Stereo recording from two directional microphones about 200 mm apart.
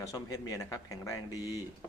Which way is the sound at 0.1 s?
15° left (ahead or behind).